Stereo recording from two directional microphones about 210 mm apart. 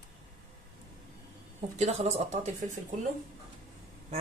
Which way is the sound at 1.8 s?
30° right (ahead or behind).